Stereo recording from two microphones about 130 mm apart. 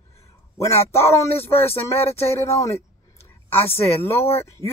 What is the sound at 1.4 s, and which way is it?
Speech, 20° left (ahead or behind).